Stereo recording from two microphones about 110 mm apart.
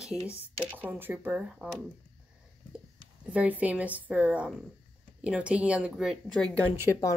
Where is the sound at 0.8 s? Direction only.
15° right (ahead or behind).